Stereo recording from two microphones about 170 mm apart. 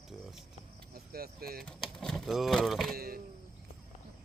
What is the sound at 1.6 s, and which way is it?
Speech, 5° left (ahead or behind).